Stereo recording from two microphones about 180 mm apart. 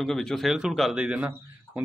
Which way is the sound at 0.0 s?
Centre (ahead or behind).